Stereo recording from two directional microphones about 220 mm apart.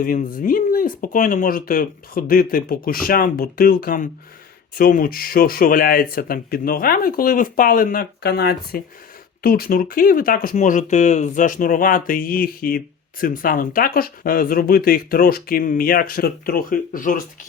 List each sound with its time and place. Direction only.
0.0 s speech: 40° left (ahead or behind)